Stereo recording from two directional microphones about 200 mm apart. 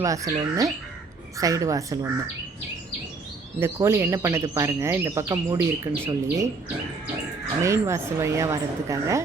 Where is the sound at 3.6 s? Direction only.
15° right (ahead or behind).